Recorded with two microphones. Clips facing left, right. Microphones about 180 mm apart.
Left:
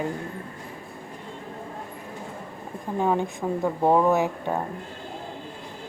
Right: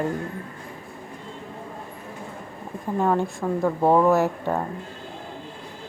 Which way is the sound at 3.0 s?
5° left (ahead or behind).